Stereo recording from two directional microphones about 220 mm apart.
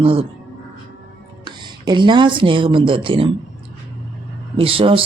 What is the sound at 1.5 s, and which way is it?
Speech, 20° right (ahead or behind).